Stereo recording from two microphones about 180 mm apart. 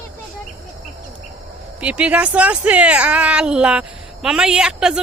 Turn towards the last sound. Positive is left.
turn(degrees=-5)  # may be behind; listen again after turning